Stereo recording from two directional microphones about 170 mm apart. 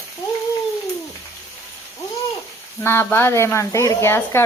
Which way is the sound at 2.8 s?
15° left (ahead or behind).